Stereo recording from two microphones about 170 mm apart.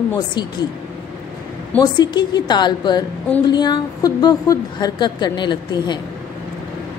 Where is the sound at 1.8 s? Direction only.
25° left (ahead or behind).